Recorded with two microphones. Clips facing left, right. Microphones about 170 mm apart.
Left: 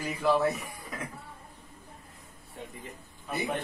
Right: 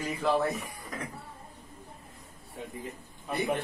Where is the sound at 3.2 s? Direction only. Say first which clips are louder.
Right 3 dB; centre (ahead or behind).